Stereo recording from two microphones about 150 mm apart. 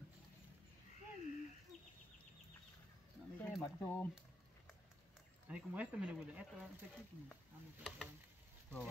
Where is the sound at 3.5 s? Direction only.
5° left (ahead or behind).